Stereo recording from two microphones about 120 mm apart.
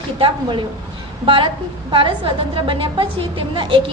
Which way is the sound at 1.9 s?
45° right (ahead or behind).